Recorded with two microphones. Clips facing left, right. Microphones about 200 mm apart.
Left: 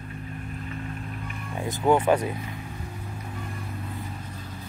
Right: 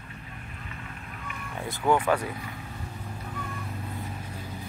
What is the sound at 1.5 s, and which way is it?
Speech, 20° left (ahead or behind).